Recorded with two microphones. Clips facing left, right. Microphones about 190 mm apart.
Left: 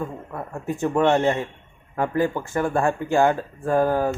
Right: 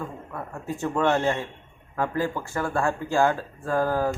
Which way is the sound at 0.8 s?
20° left (ahead or behind).